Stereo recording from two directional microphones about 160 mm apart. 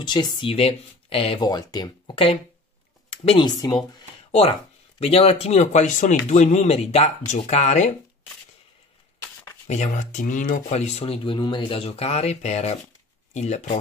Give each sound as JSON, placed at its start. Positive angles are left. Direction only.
{"t": 0.0, "sound": "speech", "side_deg": 30}
{"t": 3.1, "sound": "a sound", "side_deg": 40}
{"t": 4.3, "sound": "speech", "side_deg": 40}
{"t": 9.7, "sound": "speech", "side_deg": 50}